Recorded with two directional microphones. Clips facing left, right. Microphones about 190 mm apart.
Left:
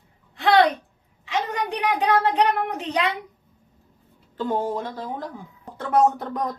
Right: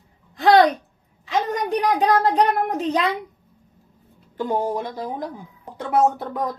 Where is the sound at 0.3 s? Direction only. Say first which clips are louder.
Right 4 dB; 40° right (ahead or behind).